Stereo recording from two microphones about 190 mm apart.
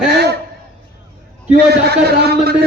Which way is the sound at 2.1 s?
55° right (ahead or behind).